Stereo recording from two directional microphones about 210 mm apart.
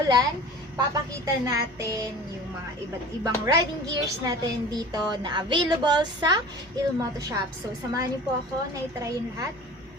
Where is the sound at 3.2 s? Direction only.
15° right (ahead or behind).